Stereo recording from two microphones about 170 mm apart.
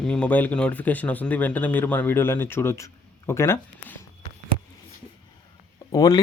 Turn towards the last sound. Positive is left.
turn(degrees=20)  # may be behind; listen again after turning